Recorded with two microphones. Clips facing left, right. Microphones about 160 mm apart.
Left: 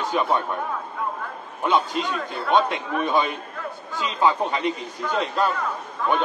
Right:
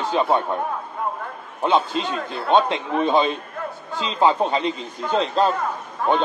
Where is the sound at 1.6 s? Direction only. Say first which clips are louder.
Right 2 dB; 25° right (ahead or behind).